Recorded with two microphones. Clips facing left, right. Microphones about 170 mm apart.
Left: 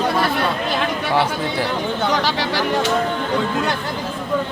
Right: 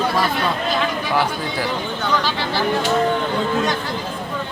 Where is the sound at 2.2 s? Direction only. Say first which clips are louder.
Left 2 dB; 80° left.